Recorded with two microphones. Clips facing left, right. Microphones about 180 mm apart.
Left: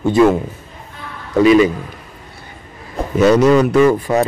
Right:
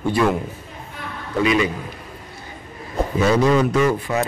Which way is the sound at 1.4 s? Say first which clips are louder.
Left 9 dB; 35° left (ahead or behind).